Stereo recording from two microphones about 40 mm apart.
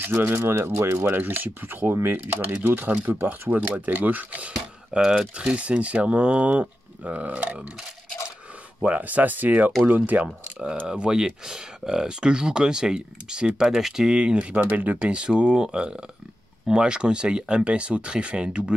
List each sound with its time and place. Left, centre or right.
0.1 s speech: right
4.9 s speech: centre
8.8 s speech: right
10.2 s speech: right
14.1 s speech: right